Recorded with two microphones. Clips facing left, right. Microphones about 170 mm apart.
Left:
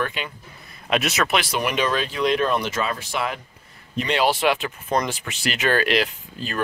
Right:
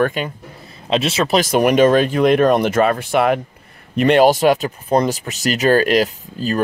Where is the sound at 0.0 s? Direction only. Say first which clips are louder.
Right 9 dB; 45° right (ahead or behind).